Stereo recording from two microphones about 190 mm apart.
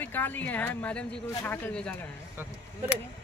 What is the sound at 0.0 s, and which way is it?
Speech, 10° left (ahead or behind).